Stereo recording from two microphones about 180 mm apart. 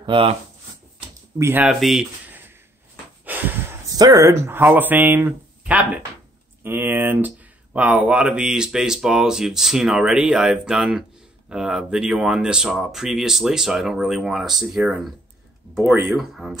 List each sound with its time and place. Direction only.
0.0 s speech: 30° right (ahead or behind)
1.4 s speech: 10° right (ahead or behind)
3.3 s snort: 10° right (ahead or behind)
3.9 s speech: 20° right (ahead or behind); by 16.5 s centre (ahead or behind)